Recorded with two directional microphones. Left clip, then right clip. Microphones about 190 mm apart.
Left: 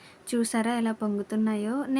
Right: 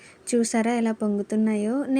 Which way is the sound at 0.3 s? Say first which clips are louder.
Right 4 dB; 10° right (ahead or behind).